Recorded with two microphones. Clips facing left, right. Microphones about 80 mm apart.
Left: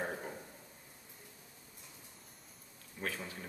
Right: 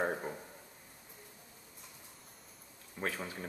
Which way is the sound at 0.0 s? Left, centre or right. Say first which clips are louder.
Right 5 dB; right.